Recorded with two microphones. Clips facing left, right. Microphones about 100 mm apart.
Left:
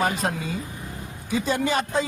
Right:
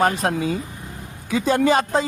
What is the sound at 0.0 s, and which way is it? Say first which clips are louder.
Speech: right 5 dB; 70° right (ahead or behind).